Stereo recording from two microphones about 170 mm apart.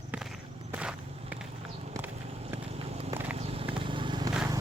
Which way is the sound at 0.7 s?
5° right (ahead or behind).